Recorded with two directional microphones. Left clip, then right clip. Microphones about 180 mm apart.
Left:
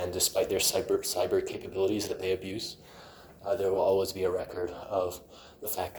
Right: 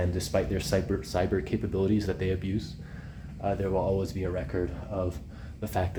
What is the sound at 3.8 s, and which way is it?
Speech, 20° left (ahead or behind).